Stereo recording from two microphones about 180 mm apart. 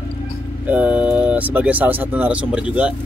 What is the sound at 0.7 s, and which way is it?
Speech, 10° right (ahead or behind).